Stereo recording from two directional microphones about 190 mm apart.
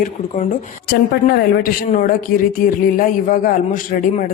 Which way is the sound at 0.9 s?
50° left (ahead or behind).